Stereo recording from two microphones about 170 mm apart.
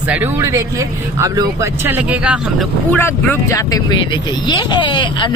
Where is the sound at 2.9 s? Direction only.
10° left (ahead or behind); by 5.3 s 30° left (ahead or behind).